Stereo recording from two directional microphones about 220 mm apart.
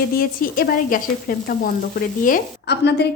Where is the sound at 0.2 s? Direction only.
40° left (ahead or behind).